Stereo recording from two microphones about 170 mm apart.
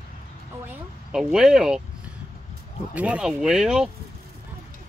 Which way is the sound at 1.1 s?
5° right (ahead or behind).